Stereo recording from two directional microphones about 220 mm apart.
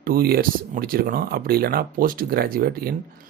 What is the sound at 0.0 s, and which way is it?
Speech, 40° right (ahead or behind).